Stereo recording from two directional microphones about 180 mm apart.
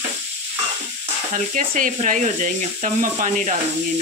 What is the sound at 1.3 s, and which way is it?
Speech, 45° right (ahead or behind).